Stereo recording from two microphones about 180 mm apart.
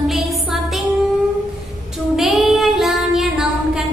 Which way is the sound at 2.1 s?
Centre (ahead or behind).